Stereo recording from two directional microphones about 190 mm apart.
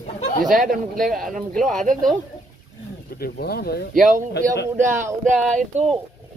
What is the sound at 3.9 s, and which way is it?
Speech, 45° right (ahead or behind).